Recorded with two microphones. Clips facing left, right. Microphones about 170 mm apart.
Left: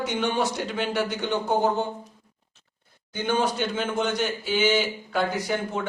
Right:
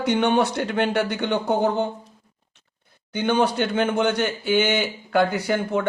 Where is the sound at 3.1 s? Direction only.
65° right (ahead or behind).